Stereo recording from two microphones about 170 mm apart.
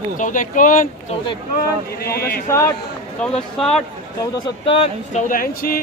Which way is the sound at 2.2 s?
65° left (ahead or behind).